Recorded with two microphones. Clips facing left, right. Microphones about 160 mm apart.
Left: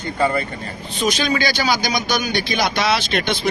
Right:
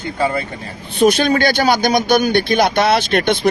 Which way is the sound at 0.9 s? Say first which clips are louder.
Right 7 dB; 60° right (ahead or behind).